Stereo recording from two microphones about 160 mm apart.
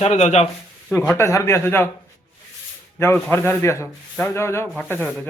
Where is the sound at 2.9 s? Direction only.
15° left (ahead or behind).